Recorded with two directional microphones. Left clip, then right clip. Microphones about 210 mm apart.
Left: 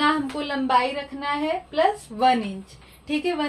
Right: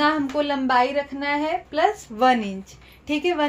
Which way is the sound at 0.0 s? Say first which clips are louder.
Right 2 dB; 40° right (ahead or behind).